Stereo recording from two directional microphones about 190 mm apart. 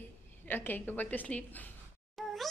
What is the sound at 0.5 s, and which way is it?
A woman's voice, 10° left (ahead or behind).